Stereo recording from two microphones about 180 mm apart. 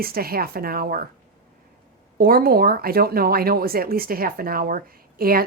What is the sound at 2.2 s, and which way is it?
Speech, 55° right (ahead or behind).